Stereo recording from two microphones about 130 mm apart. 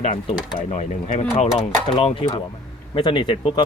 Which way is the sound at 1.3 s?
45° left (ahead or behind).